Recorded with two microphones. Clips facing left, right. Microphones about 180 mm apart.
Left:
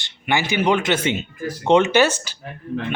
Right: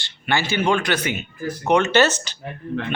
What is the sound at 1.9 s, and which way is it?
Speech, 10° left (ahead or behind).